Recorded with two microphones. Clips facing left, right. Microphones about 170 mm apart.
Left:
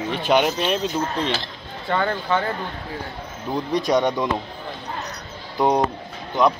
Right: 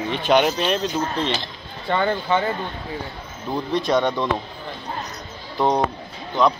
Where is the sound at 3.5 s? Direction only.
15° left (ahead or behind).